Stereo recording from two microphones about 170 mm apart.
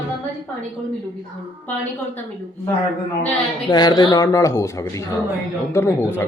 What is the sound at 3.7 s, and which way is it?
A man's voice, 25° left (ahead or behind).